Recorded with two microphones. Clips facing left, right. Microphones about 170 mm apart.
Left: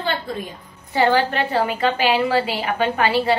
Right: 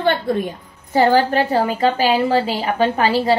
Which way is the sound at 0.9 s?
40° right (ahead or behind).